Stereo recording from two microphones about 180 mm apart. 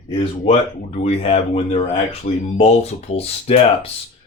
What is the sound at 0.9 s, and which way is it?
Speech, 35° left (ahead or behind).